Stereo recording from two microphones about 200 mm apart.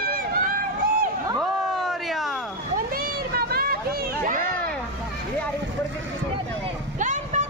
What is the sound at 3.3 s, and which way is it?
Vehicle, 50° right (ahead or behind).